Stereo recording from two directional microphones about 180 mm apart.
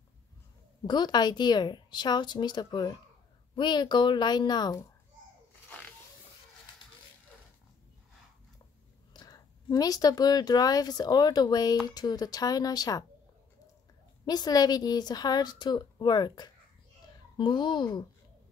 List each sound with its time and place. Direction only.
0.8 s a woman's voice: 25° left (ahead or behind)
9.1 s a woman's voice: 20° left (ahead or behind)
14.2 s a woman's voice: 20° left (ahead or behind)